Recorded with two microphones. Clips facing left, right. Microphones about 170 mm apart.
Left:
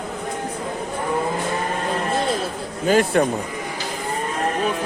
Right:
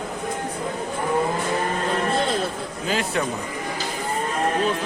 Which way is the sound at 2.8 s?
50° left (ahead or behind).